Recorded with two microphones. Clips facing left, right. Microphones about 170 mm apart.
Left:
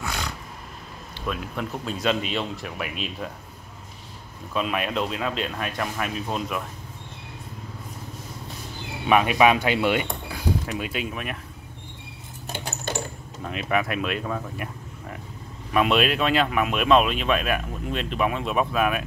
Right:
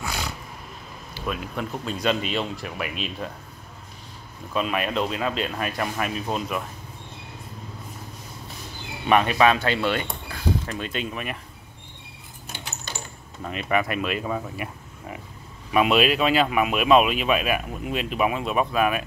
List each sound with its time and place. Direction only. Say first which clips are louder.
0.0 s a sound: even; 5° right (ahead or behind)
1.1 s speech: right 1 dB; 5° right (ahead or behind)
4.6 s speech: right 1 dB; centre (ahead or behind)
9.0 s speech: even; 5° left (ahead or behind)
12.9 s mechanisms: left 9 dB; 50° left (ahead or behind)
13.4 s speech: right 1 dB; centre (ahead or behind)